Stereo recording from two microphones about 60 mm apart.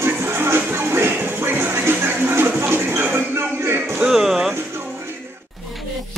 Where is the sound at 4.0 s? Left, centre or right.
Centre.